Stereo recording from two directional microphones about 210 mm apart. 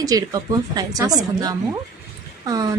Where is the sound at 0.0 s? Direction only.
15° right (ahead or behind).